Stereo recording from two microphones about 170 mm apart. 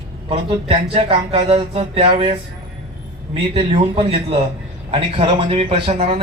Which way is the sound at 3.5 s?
30° right (ahead or behind).